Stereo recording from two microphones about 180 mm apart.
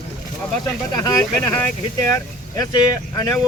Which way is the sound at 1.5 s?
10° left (ahead or behind).